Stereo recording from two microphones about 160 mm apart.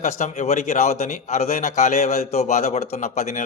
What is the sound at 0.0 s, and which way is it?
A man's voice, 45° left (ahead or behind).